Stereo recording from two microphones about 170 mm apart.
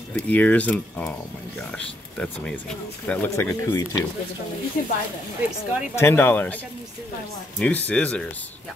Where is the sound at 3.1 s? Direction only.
15° left (ahead or behind).